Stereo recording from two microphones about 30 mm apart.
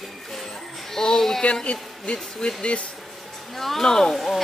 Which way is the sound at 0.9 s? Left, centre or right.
Centre.